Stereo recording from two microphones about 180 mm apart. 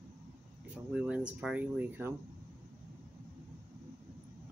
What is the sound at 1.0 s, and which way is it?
Speech, 5° right (ahead or behind).